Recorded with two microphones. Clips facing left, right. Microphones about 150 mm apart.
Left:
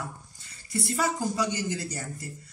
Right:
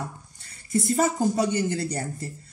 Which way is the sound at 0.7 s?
45° right (ahead or behind).